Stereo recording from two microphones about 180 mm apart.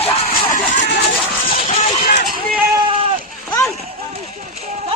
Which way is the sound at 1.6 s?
35° left (ahead or behind).